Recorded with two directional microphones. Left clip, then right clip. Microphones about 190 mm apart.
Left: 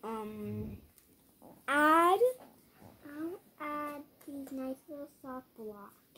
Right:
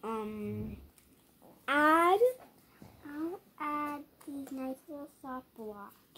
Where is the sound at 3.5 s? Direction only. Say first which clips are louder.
Right 4 dB; 30° right (ahead or behind).